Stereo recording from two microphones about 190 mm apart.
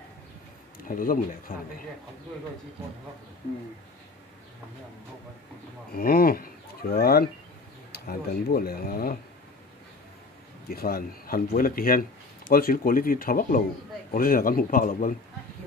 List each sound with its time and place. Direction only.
0.7 s speech: 45° left (ahead or behind)
5.9 s speech: 50° left (ahead or behind)
10.7 s speech: 50° left (ahead or behind)